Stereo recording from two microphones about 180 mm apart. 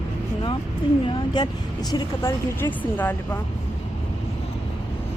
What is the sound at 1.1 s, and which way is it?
Speech, 25° left (ahead or behind).